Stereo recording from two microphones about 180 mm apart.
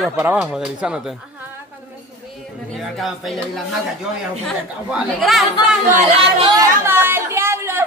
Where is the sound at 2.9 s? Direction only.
Centre (ahead or behind).